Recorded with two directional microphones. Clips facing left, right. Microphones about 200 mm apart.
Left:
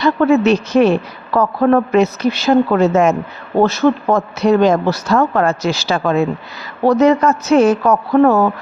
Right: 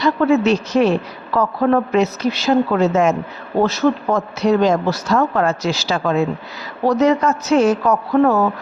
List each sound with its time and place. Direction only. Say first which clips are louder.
0.0 s a woman's voice: left 3 dB; 60° left (ahead or behind)